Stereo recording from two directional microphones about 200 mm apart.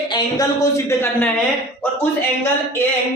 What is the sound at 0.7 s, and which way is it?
Speech, 10° left (ahead or behind).